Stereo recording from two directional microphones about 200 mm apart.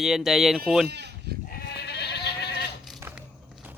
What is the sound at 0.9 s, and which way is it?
Sheep, 55° right (ahead or behind).